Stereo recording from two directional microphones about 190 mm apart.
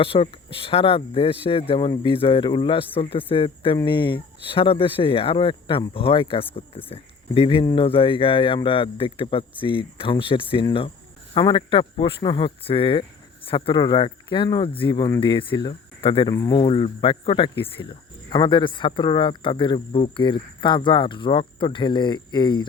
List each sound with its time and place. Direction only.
0.0 s speech: 30° left (ahead or behind)
7.6 s speech: 15° left (ahead or behind)
7.9 s speech: 30° left (ahead or behind)
16.3 s speech: 15° left (ahead or behind)
16.6 s speech: 30° left (ahead or behind)